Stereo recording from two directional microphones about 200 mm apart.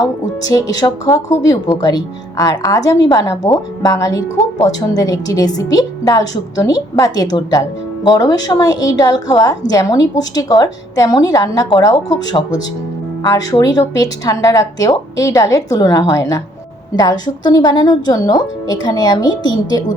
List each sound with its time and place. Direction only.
0.0 s a woman's voice: 20° left (ahead or behind)